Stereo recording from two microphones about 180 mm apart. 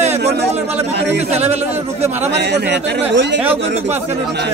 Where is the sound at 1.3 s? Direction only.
35° right (ahead or behind).